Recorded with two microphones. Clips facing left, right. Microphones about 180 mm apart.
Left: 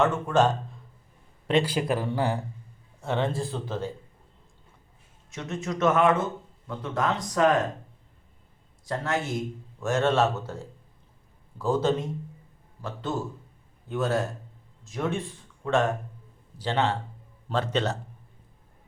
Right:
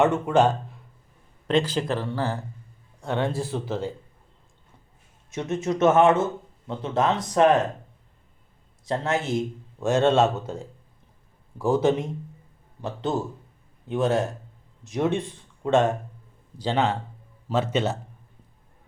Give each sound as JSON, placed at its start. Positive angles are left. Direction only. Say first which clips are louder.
{"t": 0.0, "sound": "a man's voice", "louder": "right 3 dB", "side_deg": -15}
{"t": 1.5, "sound": "speech", "louder": "right 1 dB", "side_deg": 10}
{"t": 3.0, "sound": "speech", "louder": "right 1 dB", "side_deg": 0}
{"t": 5.3, "sound": "speech", "louder": "right 6 dB", "side_deg": -20}
{"t": 8.9, "sound": "a man's voice", "louder": "right 4 dB", "side_deg": -25}
{"t": 12.8, "sound": "a man's voice", "louder": "right 4 dB", "side_deg": -20}